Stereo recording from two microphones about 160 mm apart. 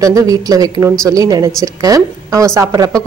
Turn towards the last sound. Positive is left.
turn(degrees=-20)  # may be behind; listen again after turning